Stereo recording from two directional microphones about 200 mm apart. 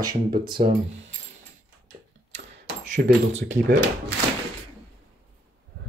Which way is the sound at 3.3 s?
40° right (ahead or behind).